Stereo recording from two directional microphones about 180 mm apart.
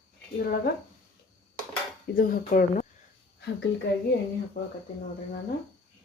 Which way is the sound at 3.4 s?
70° left (ahead or behind).